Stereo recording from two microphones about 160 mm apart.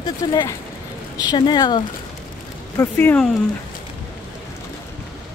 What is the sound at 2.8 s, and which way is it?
Speech, 15° left (ahead or behind).